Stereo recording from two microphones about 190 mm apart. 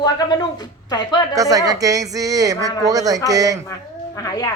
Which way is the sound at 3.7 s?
15° left (ahead or behind).